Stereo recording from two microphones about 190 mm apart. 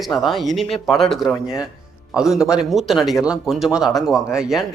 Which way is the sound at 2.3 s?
15° left (ahead or behind).